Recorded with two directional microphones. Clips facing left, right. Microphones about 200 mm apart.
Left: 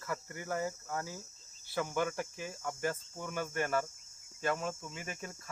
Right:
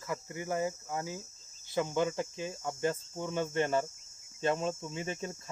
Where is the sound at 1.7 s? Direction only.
20° right (ahead or behind).